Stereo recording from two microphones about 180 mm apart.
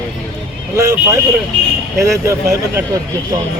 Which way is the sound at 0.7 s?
15° right (ahead or behind).